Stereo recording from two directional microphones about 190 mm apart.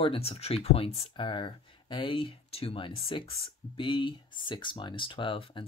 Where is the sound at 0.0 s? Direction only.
30° left (ahead or behind).